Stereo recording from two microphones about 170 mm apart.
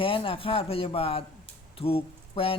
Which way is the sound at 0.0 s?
30° left (ahead or behind).